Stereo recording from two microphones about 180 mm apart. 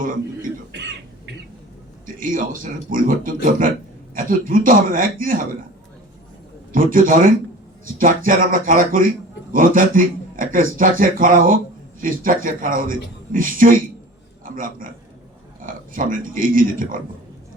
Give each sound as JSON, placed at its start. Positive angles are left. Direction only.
{"t": 2.0, "sound": "a man's voice", "side_deg": -50}
{"t": 6.7, "sound": "a man's voice", "side_deg": -50}